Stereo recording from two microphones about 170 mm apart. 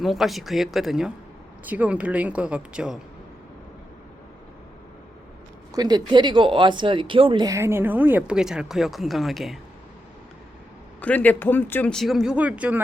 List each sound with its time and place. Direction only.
0.0 s speech: centre (ahead or behind)
5.7 s speech: 25° right (ahead or behind); by 9.6 s centre (ahead or behind)
11.0 s speech: 10° left (ahead or behind); by 12.8 s 10° right (ahead or behind)